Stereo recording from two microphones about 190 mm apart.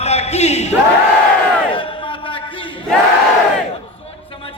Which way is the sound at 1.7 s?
25° left (ahead or behind).